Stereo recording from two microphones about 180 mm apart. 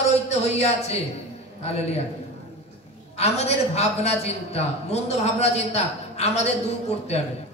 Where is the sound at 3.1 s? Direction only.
35° left (ahead or behind).